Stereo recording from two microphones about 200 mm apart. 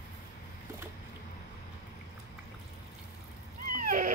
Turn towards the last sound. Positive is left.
turn(degrees=-40)  # may be behind; listen again after turning